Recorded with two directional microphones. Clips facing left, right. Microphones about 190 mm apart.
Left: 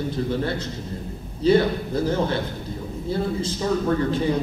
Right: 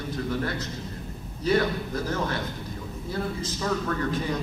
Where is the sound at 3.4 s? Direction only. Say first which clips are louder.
Left 5 dB; 25° left (ahead or behind).